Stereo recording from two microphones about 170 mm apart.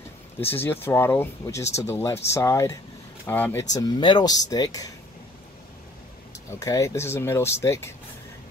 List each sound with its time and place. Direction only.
0.5 s speech: 10° left (ahead or behind)
3.7 s speech: 25° left (ahead or behind)
6.3 s speech: 20° left (ahead or behind)